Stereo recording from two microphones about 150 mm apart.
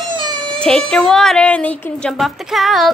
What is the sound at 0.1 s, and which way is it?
Cat, 30° right (ahead or behind).